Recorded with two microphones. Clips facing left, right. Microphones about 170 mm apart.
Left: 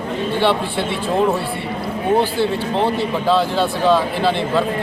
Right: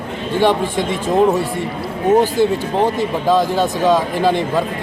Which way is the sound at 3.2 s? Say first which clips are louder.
Right 2 dB; 15° right (ahead or behind).